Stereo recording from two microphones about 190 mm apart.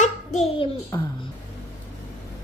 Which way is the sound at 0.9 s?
15° left (ahead or behind).